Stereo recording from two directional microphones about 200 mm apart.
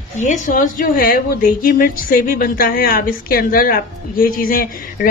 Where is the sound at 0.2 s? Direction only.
40° left (ahead or behind).